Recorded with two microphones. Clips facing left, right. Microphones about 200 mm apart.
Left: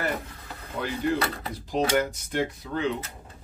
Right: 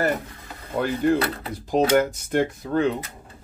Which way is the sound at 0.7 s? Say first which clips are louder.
Right 6 dB; 50° right (ahead or behind).